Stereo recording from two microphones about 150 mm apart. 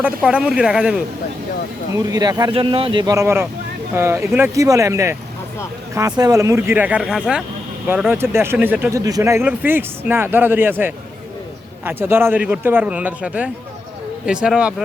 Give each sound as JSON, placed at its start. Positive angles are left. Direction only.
{"t": 0.0, "sound": "speech", "side_deg": -10}
{"t": 2.0, "sound": "speech", "side_deg": -25}
{"t": 9.0, "sound": "speech", "side_deg": -25}